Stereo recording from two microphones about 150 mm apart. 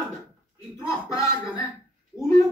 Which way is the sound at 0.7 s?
20° left (ahead or behind).